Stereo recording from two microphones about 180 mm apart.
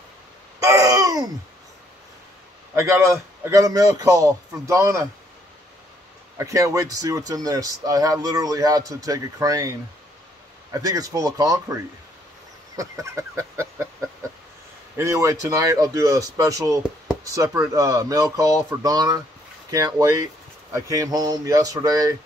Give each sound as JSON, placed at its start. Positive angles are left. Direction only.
{"t": 0.6, "sound": "babbling", "side_deg": -20}
{"t": 2.7, "sound": "a man's voice", "side_deg": -15}
{"t": 6.3, "sound": "speech", "side_deg": -15}
{"t": 10.7, "sound": "a man's voice", "side_deg": -20}
{"t": 15.0, "sound": "speech", "side_deg": -15}